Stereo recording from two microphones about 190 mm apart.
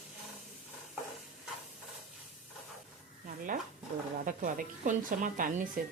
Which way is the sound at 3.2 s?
45° right (ahead or behind).